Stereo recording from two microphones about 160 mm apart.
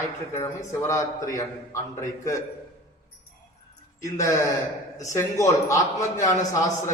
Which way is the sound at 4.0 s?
20° left (ahead or behind).